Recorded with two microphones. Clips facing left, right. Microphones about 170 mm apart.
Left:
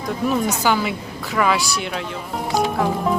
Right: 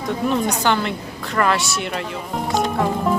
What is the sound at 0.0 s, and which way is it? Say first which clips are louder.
Speech: even; centre (ahead or behind).